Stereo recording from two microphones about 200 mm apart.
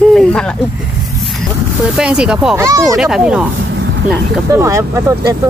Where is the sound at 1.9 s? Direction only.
5° right (ahead or behind).